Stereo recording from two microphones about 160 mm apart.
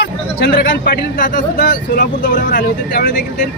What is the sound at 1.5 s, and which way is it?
Speech, 75° left (ahead or behind).